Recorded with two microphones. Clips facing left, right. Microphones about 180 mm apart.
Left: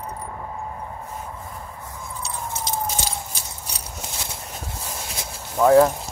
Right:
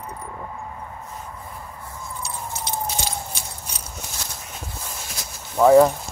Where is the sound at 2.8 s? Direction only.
40° left (ahead or behind).